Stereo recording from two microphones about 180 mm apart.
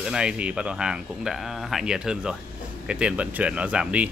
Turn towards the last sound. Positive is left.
turn(degrees=-5)  # may be behind; listen again after turning